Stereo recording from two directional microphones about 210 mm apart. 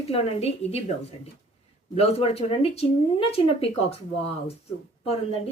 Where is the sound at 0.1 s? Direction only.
30° left (ahead or behind).